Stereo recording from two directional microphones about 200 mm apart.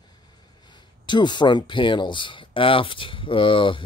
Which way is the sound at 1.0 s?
20° left (ahead or behind).